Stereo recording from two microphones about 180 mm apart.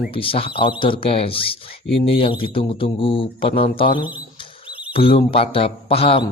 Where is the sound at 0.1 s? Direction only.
30° left (ahead or behind).